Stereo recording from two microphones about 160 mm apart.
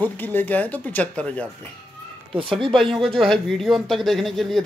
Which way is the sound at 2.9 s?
Centre (ahead or behind).